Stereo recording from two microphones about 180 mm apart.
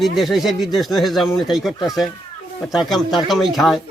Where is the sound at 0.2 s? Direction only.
Centre (ahead or behind).